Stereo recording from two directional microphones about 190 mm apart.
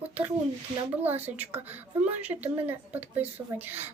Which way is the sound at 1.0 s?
10° right (ahead or behind).